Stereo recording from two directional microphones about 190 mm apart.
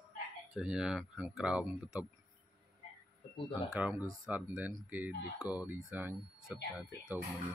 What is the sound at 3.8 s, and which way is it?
Speech, 10° right (ahead or behind).